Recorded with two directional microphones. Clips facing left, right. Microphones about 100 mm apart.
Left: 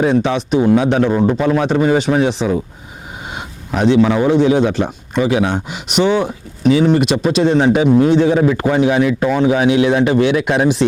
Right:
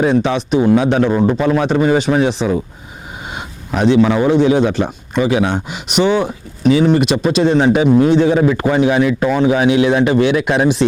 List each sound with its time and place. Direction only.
0.0 s speech: 15° right (ahead or behind)
1.1 s speech: 25° right (ahead or behind)
1.4 s speech: 15° right (ahead or behind)
3.8 s speech: 15° right (ahead or behind)